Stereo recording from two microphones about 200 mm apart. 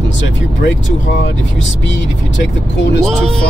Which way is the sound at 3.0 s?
Centre (ahead or behind).